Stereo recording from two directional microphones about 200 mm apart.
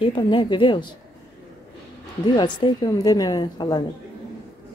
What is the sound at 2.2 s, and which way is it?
A woman's voice, 20° left (ahead or behind).